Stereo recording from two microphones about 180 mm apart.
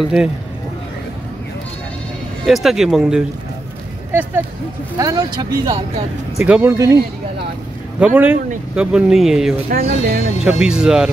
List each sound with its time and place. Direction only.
0.0 s speech: 5° right (ahead or behind)
2.4 s speech: centre (ahead or behind); by 5.8 s 25° right (ahead or behind)
6.4 s speech: 10° right (ahead or behind)
8.0 s speech: 10° right (ahead or behind)
9.7 s speech: 60° right (ahead or behind)
10.4 s speech: 5° right (ahead or behind)